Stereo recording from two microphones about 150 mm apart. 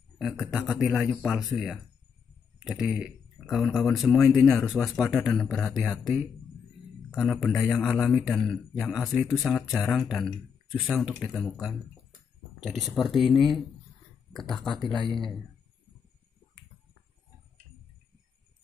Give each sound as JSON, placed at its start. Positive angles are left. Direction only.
{"t": 0.5, "sound": "speech", "side_deg": -5}
{"t": 7.2, "sound": "speech", "side_deg": 0}